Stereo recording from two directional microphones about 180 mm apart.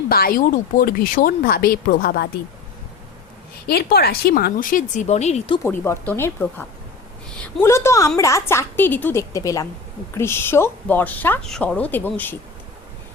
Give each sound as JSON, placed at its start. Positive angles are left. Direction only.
{"t": 0.1, "sound": "speech", "side_deg": 55}
{"t": 3.7, "sound": "speech", "side_deg": 60}
{"t": 5.6, "sound": "speech", "side_deg": 15}